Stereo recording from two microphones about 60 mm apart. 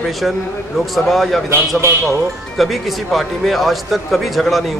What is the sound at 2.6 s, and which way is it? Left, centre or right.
A man's voice, centre.